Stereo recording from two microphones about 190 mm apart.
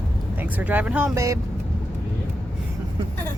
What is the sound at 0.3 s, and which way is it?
Speech, 10° right (ahead or behind).